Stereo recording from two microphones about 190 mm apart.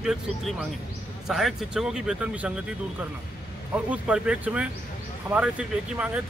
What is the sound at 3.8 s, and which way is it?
Speech, 5° right (ahead or behind).